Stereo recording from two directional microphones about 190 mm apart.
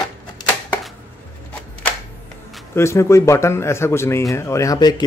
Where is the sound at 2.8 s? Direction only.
15° left (ahead or behind).